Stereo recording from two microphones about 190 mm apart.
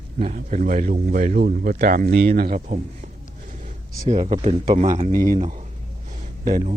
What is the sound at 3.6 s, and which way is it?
A man's voice, 40° right (ahead or behind).